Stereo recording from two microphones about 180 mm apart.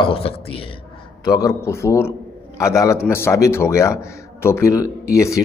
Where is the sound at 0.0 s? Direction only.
30° left (ahead or behind).